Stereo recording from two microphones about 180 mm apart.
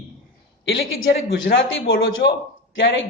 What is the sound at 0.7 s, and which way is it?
A man's voice, 85° left.